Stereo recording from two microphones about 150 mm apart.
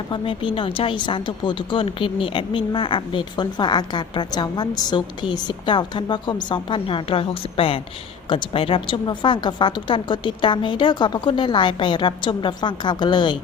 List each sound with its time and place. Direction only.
0.1 s a woman's voice: 35° left (ahead or behind)